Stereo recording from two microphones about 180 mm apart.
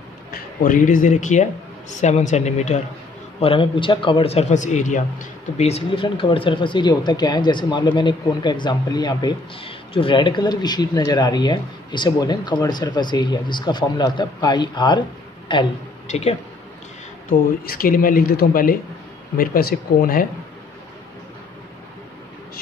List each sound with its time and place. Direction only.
0.3 s a man's voice: 50° left (ahead or behind); by 15.6 s 25° left (ahead or behind)
16.1 s speech: 35° left (ahead or behind)
17.3 s speech: 50° left (ahead or behind)